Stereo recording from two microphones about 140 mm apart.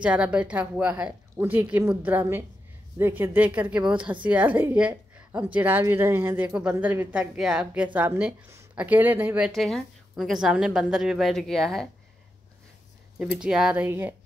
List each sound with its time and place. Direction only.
0.0 s a woman's voice: 10° right (ahead or behind)
9.6 s a woman's voice: centre (ahead or behind)
13.2 s a woman's voice: 5° right (ahead or behind)